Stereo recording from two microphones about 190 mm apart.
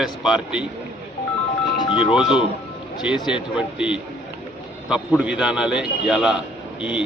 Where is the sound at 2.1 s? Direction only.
5° right (ahead or behind).